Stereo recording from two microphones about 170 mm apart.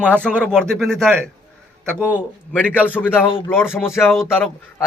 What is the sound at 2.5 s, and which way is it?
A man's voice, 10° left (ahead or behind).